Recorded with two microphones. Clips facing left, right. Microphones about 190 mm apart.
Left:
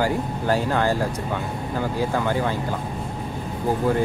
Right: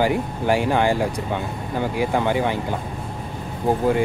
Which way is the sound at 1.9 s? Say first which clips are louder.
Right 3 dB; 20° right (ahead or behind).